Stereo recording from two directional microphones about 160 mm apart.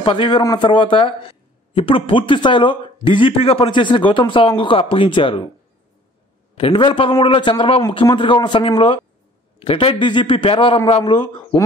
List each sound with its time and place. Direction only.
0.0 s speech: 30° left (ahead or behind)
6.5 s speech: 35° left (ahead or behind)